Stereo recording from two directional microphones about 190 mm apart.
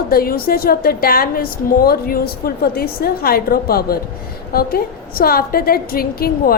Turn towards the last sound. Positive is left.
turn(degrees=50)  # may be behind; listen again after turning